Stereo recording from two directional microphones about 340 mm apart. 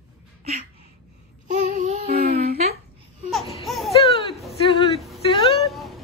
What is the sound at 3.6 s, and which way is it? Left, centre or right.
Laughter, centre.